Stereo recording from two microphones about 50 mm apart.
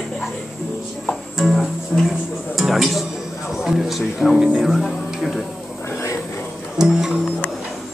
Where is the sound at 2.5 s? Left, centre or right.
Centre.